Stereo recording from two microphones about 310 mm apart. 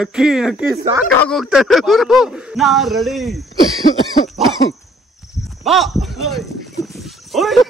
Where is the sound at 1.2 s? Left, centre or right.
Centre.